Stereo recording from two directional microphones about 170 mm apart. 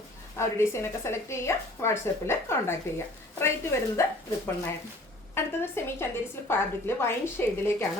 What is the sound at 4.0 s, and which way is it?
Speech, 15° left (ahead or behind).